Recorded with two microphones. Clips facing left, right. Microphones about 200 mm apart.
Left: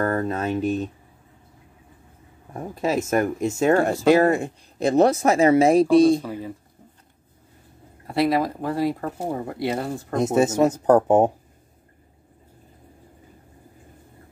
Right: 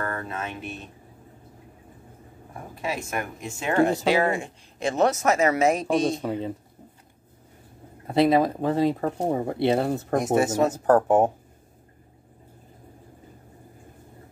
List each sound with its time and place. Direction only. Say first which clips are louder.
0.0 s speech: left 8 dB; 40° left (ahead or behind)
2.5 s speech: left 8 dB; 40° left (ahead or behind)
6.2 s speech: right 3 dB; 25° right (ahead or behind)
8.1 s speech: right 2 dB; 20° right (ahead or behind)
10.1 s speech: left 3 dB; 20° left (ahead or behind)